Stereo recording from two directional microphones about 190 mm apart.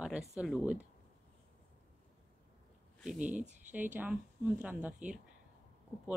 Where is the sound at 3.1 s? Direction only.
40° right (ahead or behind).